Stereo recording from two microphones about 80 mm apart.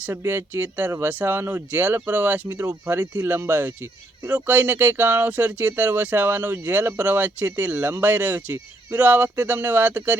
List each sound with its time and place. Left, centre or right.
0.1 s speech: right